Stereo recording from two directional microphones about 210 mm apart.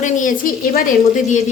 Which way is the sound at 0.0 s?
40° left (ahead or behind).